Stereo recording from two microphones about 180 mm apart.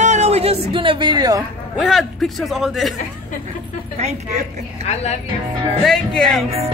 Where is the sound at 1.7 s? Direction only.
Centre (ahead or behind).